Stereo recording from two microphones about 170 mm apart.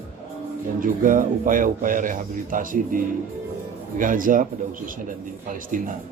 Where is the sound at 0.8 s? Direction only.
55° right (ahead or behind).